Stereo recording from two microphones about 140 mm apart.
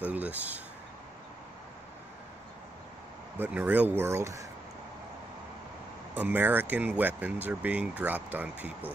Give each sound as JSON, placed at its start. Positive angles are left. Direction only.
{"t": 0.0, "sound": "speech", "side_deg": -10}
{"t": 3.3, "sound": "speech", "side_deg": -10}
{"t": 6.1, "sound": "speech", "side_deg": -15}